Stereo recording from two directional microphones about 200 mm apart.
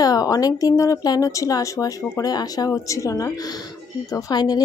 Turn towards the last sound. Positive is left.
turn(degrees=20)  # may be behind; listen again after turning